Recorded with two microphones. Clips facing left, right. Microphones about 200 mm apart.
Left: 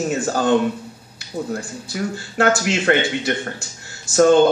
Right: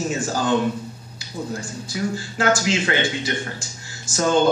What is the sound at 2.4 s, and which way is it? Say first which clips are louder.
Speech: left 2 dB; 65° left (ahead or behind).